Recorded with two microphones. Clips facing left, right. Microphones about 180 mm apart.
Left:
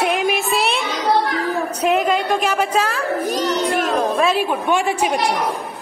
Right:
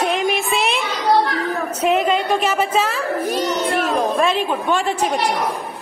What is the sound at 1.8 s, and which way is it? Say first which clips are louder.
A woman's voice: right 1 dB; centre (ahead or behind).